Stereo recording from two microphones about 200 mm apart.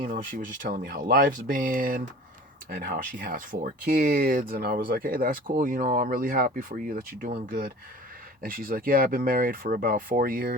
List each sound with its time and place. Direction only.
0.1 s speech: 40° right (ahead or behind)